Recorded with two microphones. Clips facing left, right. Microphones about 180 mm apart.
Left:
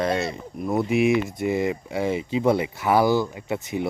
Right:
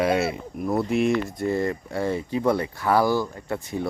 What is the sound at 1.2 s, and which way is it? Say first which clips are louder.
Speech: left 1 dB; 15° left (ahead or behind).